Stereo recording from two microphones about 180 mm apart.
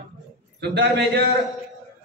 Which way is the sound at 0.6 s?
70° right (ahead or behind).